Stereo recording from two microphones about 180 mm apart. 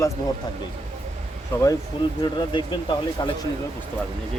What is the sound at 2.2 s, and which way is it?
Speech, 25° left (ahead or behind).